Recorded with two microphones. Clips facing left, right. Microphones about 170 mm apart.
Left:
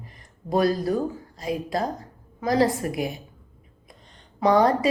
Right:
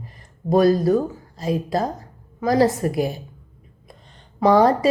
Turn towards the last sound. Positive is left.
turn(degrees=-25)  # may be behind; listen again after turning